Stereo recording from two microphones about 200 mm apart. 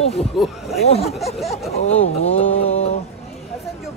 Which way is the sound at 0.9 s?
30° left (ahead or behind).